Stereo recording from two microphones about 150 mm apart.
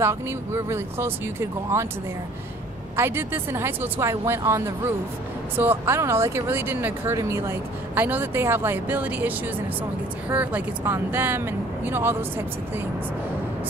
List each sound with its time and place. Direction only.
0.7 s speech: 15° right (ahead or behind)
3.0 s speech: 15° right (ahead or behind)
10.3 s speech: 10° right (ahead or behind)